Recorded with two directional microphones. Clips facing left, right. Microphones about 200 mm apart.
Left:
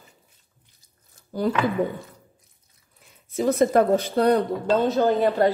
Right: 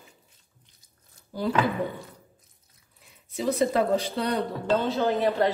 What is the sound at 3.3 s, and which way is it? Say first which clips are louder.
Speech: left 5 dB; 50° left (ahead or behind).